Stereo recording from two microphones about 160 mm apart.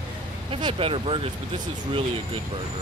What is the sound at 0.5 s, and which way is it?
Speech, 35° right (ahead or behind).